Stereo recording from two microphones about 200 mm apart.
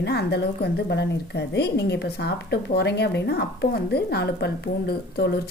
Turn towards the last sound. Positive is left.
turn(degrees=55)  # may be behind; listen again after turning